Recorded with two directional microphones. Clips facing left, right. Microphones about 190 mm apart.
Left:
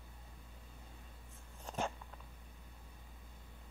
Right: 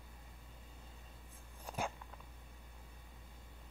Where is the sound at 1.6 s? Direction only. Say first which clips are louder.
Left 2 dB; 10° right (ahead or behind).